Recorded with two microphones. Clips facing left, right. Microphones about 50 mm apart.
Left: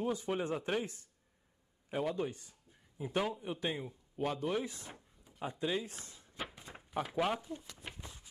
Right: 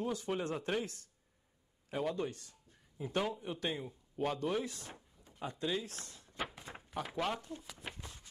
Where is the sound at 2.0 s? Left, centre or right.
Centre.